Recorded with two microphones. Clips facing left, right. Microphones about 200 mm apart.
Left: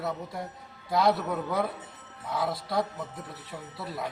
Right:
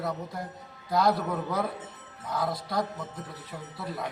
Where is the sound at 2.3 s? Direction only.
Centre (ahead or behind).